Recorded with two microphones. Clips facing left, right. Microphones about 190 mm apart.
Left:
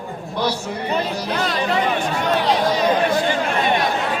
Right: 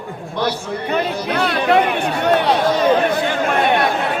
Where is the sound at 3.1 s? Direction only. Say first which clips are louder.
Right 1 dB; 60° right (ahead or behind).